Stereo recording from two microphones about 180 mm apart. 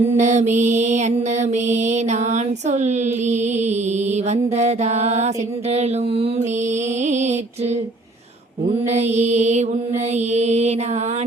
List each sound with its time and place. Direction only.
0.2 s mantra: 40° right (ahead or behind)
8.9 s mantra: 40° right (ahead or behind)